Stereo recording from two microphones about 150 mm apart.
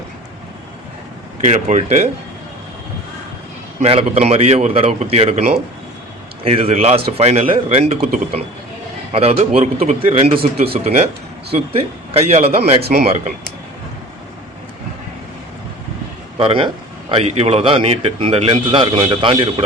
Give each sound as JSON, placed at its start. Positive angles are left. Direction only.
{"t": 1.4, "sound": "a man's voice", "side_deg": -50}
{"t": 3.8, "sound": "a man's voice", "side_deg": -45}
{"t": 9.1, "sound": "a man's voice", "side_deg": -40}
{"t": 12.8, "sound": "speech", "side_deg": -90}
{"t": 13.1, "sound": "speech", "side_deg": -55}
{"t": 16.4, "sound": "a man's voice", "side_deg": -35}